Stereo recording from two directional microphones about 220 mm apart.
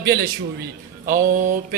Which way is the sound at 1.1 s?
40° right (ahead or behind).